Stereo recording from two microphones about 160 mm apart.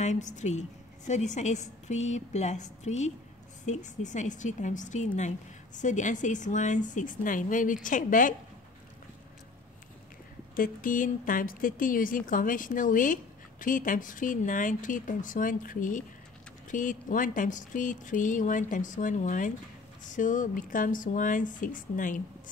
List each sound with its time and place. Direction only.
0.0 s a woman's voice: 50° left (ahead or behind)
10.5 s a woman's voice: 60° left (ahead or behind)